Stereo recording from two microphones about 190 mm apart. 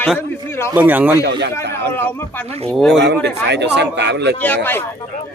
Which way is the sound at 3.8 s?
65° right (ahead or behind).